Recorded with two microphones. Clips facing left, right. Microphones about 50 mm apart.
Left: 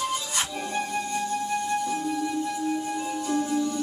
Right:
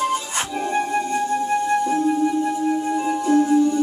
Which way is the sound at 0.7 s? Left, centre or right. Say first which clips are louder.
Right 9 dB; right.